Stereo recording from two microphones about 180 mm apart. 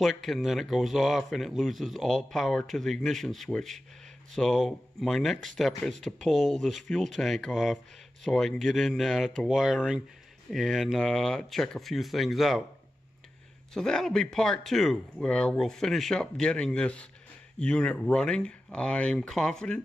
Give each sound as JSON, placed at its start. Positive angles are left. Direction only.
{"t": 0.0, "sound": "speech", "side_deg": 0}
{"t": 13.7, "sound": "speech", "side_deg": 5}